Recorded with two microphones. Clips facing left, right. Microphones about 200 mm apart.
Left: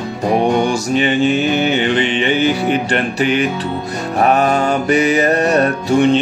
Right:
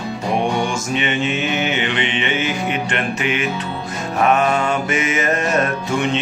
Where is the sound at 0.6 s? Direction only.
35° left (ahead or behind).